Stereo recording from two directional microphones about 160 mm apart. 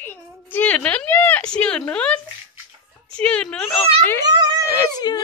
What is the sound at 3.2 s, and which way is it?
Speech, 5° left (ahead or behind).